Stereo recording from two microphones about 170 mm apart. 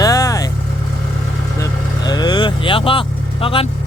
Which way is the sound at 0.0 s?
20° left (ahead or behind).